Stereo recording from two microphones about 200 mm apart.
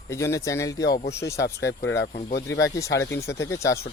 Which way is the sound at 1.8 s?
60° left (ahead or behind).